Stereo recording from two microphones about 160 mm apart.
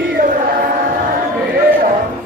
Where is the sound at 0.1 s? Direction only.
60° right (ahead or behind).